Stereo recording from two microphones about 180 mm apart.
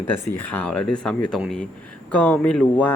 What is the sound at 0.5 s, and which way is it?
Speech, 10° left (ahead or behind).